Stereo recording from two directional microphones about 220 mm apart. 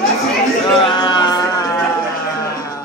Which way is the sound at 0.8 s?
20° left (ahead or behind).